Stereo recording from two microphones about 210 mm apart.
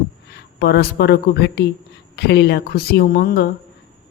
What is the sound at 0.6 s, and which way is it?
Speech, 50° left (ahead or behind).